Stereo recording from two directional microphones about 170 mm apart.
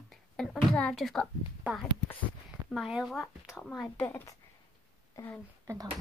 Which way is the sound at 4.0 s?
15° left (ahead or behind).